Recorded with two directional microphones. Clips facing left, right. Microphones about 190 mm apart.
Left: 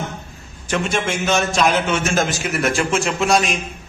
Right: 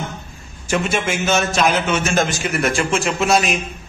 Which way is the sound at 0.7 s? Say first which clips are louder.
Right 1 dB; 5° right (ahead or behind).